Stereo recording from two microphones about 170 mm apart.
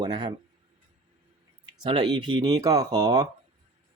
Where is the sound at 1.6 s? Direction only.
25° right (ahead or behind).